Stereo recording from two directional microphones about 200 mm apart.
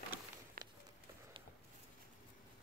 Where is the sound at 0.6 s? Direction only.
45° right (ahead or behind).